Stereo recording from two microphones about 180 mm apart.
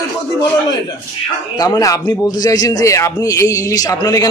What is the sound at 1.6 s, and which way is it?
A man's voice, 20° left (ahead or behind).